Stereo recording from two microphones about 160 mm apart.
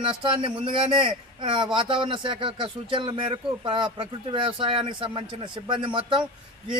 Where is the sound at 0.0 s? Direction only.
35° right (ahead or behind).